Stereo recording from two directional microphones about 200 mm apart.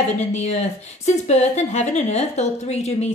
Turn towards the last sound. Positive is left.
turn(degrees=35)  # may be behind; listen again after turning